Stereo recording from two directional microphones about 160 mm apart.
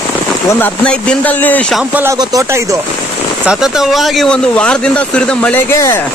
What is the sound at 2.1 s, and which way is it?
Speech, 20° right (ahead or behind).